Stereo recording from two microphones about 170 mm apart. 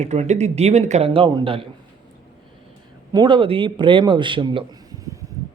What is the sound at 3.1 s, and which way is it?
A man's voice, 25° right (ahead or behind).